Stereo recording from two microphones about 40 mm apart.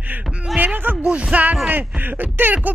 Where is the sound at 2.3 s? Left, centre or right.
Right.